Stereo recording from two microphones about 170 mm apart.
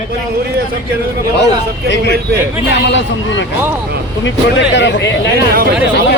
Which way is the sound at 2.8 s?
90° left.